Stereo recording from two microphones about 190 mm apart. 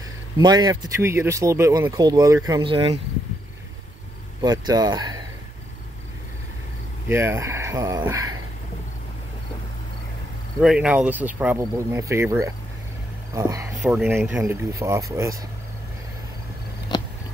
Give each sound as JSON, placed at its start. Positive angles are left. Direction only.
{"t": 0.4, "sound": "speech", "side_deg": -20}
{"t": 4.4, "sound": "speech", "side_deg": -20}
{"t": 7.1, "sound": "speech", "side_deg": -15}
{"t": 10.6, "sound": "speech", "side_deg": -5}
{"t": 13.7, "sound": "speech", "side_deg": 0}
{"t": 16.9, "sound": "a sound", "side_deg": 20}